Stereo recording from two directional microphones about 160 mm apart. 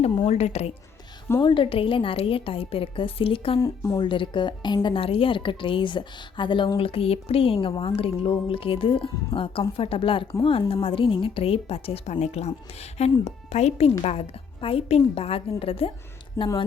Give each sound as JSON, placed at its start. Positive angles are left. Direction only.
{"t": 0.3, "sound": "a woman's voice", "side_deg": 40}
{"t": 1.4, "sound": "a woman's voice", "side_deg": 30}
{"t": 3.6, "sound": "a woman's voice", "side_deg": 25}
{"t": 16.4, "sound": "speech", "side_deg": 15}